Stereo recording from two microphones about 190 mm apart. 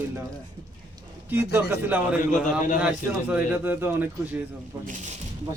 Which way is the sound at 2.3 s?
40° left (ahead or behind).